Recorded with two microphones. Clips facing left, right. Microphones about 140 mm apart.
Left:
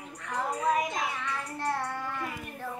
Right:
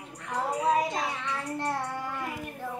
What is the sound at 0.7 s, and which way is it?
Child singing, 30° right (ahead or behind).